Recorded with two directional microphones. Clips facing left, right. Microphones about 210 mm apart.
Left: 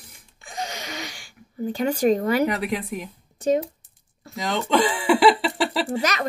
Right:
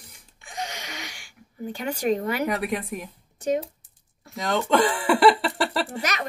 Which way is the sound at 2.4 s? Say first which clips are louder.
Left 2 dB; centre (ahead or behind).